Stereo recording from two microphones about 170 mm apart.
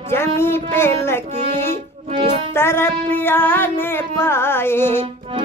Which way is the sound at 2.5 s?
15° left (ahead or behind).